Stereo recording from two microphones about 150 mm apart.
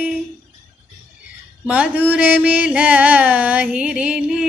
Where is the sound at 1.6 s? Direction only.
10° right (ahead or behind).